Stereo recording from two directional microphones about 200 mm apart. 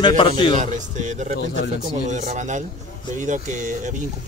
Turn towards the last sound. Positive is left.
turn(degrees=-40)  # may be behind; listen again after turning